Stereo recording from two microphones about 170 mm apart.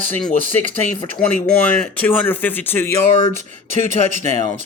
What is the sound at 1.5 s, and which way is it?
Speech, 5° left (ahead or behind).